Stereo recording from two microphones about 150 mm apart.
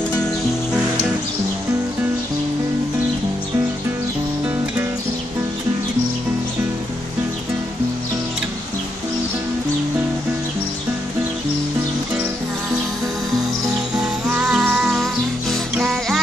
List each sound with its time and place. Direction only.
13.9 s music: 5° right (ahead or behind)